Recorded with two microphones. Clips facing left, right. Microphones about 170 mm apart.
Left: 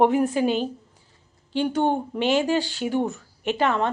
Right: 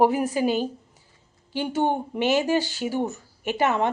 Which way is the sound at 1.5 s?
5° right (ahead or behind).